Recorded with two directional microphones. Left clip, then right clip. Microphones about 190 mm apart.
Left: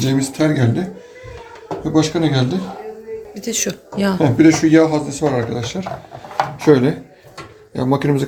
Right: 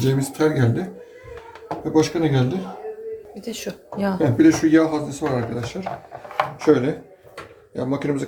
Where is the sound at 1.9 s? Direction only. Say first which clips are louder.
Left 2 dB; 20° left (ahead or behind).